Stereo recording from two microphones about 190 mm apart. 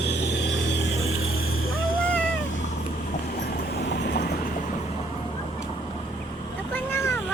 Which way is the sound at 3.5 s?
60° left (ahead or behind).